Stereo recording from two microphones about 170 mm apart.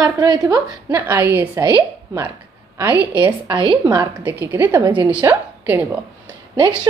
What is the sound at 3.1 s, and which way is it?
Speech, 25° right (ahead or behind).